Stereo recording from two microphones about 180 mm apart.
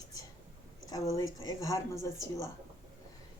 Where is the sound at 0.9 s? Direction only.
20° left (ahead or behind).